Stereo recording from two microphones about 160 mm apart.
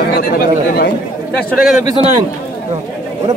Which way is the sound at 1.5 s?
Centre (ahead or behind).